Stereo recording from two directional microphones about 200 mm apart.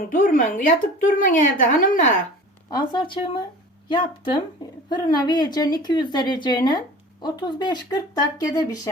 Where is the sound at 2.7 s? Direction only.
20° left (ahead or behind).